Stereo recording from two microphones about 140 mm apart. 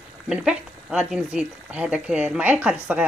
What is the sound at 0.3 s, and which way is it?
Speech, 5° right (ahead or behind).